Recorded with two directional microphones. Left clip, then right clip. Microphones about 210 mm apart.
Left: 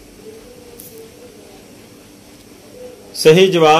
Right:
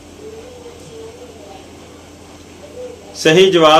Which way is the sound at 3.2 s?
35° left (ahead or behind).